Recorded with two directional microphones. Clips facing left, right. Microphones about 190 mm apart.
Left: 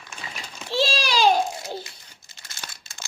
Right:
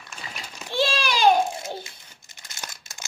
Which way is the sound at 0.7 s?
55° right (ahead or behind).